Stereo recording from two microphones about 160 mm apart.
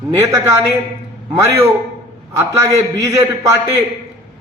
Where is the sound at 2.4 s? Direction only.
20° right (ahead or behind).